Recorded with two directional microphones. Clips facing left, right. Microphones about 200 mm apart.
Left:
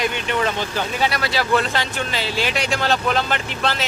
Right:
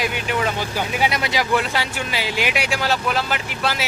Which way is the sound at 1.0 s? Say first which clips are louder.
Even; 15° right (ahead or behind).